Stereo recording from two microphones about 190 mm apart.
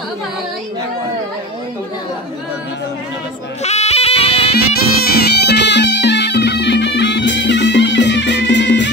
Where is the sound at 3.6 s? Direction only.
35° left (ahead or behind).